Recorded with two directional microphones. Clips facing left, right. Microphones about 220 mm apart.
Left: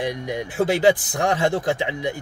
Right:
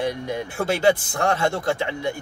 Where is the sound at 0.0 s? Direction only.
15° left (ahead or behind).